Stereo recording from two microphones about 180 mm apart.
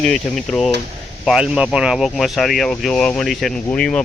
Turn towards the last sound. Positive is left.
turn(degrees=5)  # may be behind; listen again after turning